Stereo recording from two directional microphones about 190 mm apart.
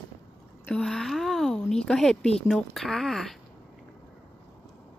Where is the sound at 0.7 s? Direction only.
5° left (ahead or behind).